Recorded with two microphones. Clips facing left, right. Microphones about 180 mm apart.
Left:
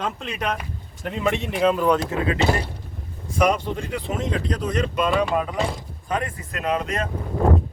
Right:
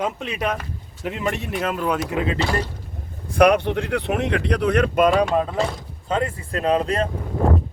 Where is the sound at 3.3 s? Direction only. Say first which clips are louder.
Right 5 dB; 65° right (ahead or behind).